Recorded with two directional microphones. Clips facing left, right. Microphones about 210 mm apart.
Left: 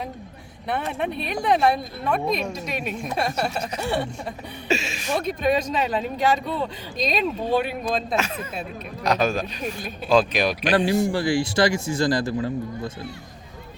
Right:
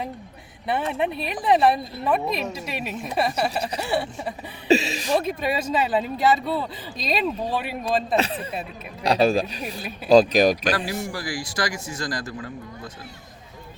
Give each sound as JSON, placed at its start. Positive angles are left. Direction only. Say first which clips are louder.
{"t": 0.7, "sound": "speech", "louder": "right 2 dB", "side_deg": -5}
{"t": 4.7, "sound": "speech", "louder": "right 6 dB", "side_deg": -35}
{"t": 5.2, "sound": "speech", "louder": "left 3 dB", "side_deg": -5}
{"t": 8.1, "sound": "speech", "louder": "right 2 dB", "side_deg": -35}
{"t": 10.8, "sound": "speech", "louder": "left 8 dB", "side_deg": 25}